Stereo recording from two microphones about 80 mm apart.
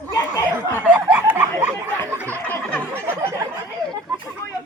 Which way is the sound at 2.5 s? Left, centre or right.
Centre.